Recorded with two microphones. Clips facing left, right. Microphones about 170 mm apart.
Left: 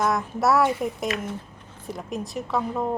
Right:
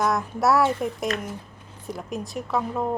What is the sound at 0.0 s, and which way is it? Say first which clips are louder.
A woman's voice: even; centre (ahead or behind).